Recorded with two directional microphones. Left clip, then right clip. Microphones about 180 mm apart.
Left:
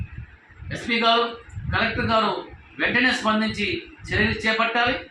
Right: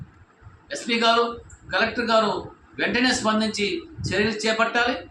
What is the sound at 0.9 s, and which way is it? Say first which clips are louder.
Speech: even; 35° right (ahead or behind).